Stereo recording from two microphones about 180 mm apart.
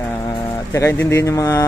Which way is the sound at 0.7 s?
15° left (ahead or behind).